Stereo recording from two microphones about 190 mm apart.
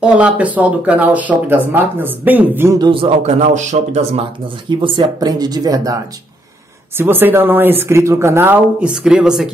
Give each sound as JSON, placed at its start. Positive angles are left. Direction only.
{"t": 0.0, "sound": "speech", "side_deg": -5}
{"t": 4.6, "sound": "speech", "side_deg": -25}
{"t": 7.0, "sound": "speech", "side_deg": -10}